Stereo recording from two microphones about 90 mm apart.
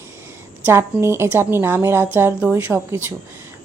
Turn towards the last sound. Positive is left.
turn(degrees=-25)  # may be behind; listen again after turning